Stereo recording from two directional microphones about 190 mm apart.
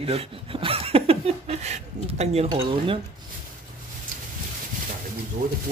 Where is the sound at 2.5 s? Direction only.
30° right (ahead or behind).